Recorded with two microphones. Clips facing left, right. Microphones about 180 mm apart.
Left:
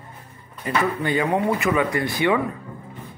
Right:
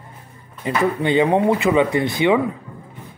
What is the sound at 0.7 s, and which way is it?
Speech, 25° right (ahead or behind).